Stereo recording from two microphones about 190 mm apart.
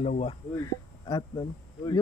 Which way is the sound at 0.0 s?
35° left (ahead or behind).